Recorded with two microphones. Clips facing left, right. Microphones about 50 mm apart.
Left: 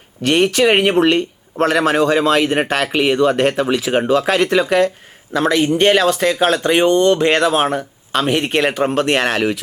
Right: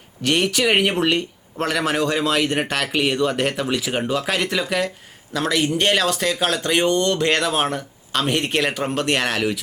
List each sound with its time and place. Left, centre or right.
0.3 s speech: left
4.5 s speech: left